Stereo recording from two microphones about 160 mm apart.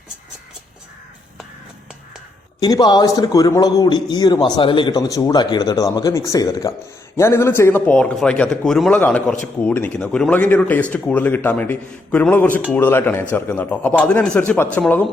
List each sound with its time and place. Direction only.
2.6 s a man's voice: 25° left (ahead or behind); by 15.0 s 10° left (ahead or behind)